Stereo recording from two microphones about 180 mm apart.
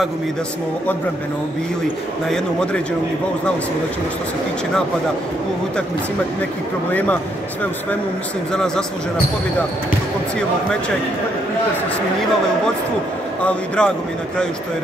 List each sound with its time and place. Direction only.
2.2 s a man's voice: 5° left (ahead or behind)
6.9 s speech: 10° left (ahead or behind)
13.4 s a man's voice: 5° left (ahead or behind)